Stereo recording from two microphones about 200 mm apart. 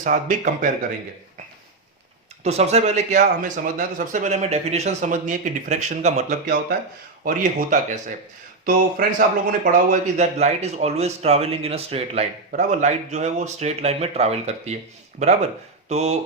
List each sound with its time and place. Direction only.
0.0 s speech: 40° right (ahead or behind)
2.4 s speech: 35° right (ahead or behind)